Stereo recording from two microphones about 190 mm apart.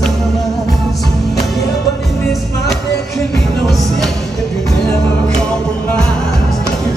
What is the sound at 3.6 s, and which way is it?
Music, centre (ahead or behind).